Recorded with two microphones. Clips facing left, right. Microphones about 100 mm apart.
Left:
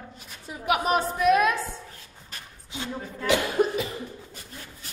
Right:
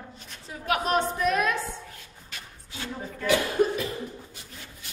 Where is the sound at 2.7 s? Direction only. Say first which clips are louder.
Left 2 dB; 20° left (ahead or behind).